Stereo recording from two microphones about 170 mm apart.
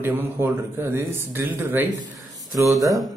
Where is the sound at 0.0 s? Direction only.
15° right (ahead or behind).